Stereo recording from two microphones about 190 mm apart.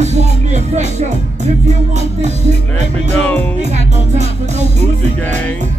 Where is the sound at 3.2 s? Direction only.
10° left (ahead or behind).